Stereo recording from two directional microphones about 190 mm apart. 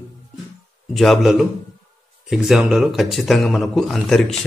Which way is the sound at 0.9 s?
Centre (ahead or behind).